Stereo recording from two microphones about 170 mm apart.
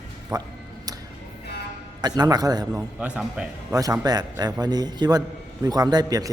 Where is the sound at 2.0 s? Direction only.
25° right (ahead or behind).